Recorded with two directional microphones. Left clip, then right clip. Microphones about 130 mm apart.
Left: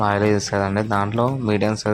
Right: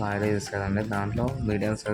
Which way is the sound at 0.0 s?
35° left (ahead or behind).